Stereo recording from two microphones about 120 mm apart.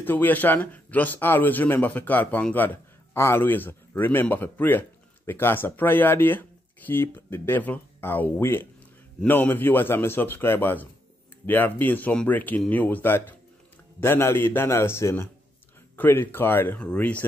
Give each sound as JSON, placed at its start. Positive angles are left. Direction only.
{"t": 0.0, "sound": "a man's voice", "side_deg": 15}